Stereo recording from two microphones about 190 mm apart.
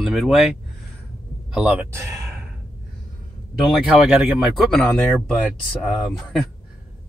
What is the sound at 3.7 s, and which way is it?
Speech, 5° right (ahead or behind).